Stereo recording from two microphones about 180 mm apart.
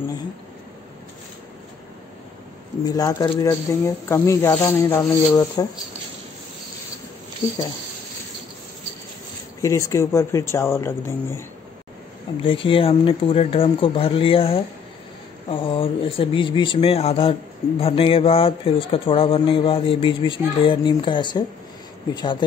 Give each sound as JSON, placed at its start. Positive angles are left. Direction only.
{"t": 2.8, "sound": "speech", "side_deg": 20}
{"t": 9.6, "sound": "speech", "side_deg": 20}
{"t": 12.4, "sound": "speech", "side_deg": 30}